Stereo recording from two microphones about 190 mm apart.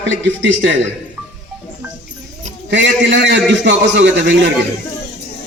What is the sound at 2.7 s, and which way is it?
A man's voice, 70° right (ahead or behind).